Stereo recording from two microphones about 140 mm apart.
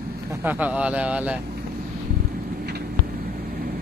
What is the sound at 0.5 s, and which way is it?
Speech, 10° right (ahead or behind).